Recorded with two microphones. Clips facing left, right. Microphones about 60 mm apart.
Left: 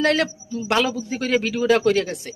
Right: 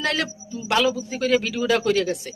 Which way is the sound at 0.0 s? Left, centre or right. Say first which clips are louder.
Left 5 dB; left.